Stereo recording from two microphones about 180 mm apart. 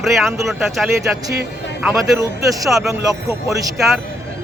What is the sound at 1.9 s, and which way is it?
Speech, 20° right (ahead or behind).